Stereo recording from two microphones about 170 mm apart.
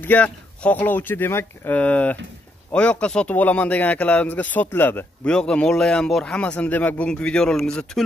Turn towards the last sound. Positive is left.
turn(degrees=5)  # may be behind; listen again after turning